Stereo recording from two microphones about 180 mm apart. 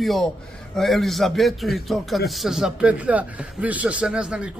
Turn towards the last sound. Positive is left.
turn(degrees=-5)  # may be behind; listen again after turning